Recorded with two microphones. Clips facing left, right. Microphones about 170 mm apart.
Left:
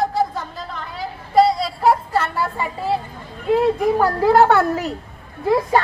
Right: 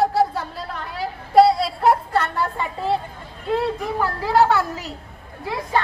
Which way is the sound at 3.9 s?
45° left (ahead or behind).